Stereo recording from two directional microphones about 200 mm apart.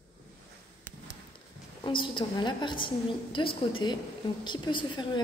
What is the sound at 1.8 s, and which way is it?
A woman's voice, 25° left (ahead or behind).